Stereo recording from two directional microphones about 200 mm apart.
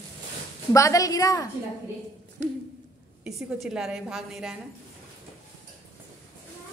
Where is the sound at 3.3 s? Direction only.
5° right (ahead or behind).